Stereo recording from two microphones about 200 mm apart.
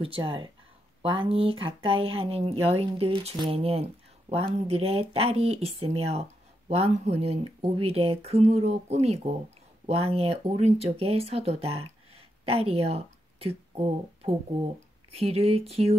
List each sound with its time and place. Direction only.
0.0 s speech: 25° right (ahead or behind)